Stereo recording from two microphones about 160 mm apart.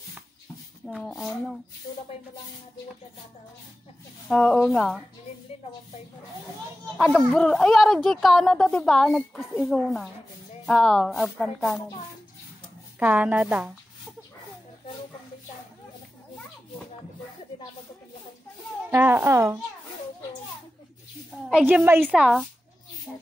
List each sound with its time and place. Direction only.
0.8 s speech: centre (ahead or behind)
4.3 s speech: 10° left (ahead or behind)
7.0 s speech: 5° left (ahead or behind)
13.0 s a woman's voice: 10° right (ahead or behind)
18.9 s a woman's voice: 15° right (ahead or behind)
21.5 s a woman's voice: 5° right (ahead or behind)